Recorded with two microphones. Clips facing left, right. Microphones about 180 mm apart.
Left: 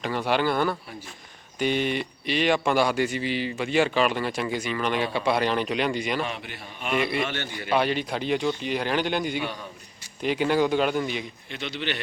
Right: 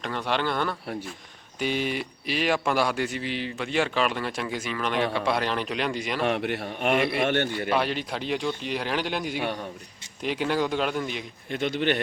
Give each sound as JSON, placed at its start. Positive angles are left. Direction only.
{"t": 0.0, "sound": "a man's voice", "side_deg": 5}
{"t": 6.2, "sound": "a man's voice", "side_deg": -70}
{"t": 7.7, "sound": "a man's voice", "side_deg": 0}
{"t": 11.4, "sound": "a man's voice", "side_deg": -50}